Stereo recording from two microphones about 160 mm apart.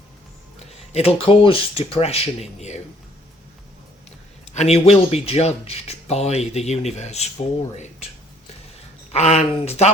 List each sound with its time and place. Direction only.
0.9 s speech: 35° left (ahead or behind)
4.5 s speech: 40° left (ahead or behind)
9.1 s speech: 45° left (ahead or behind)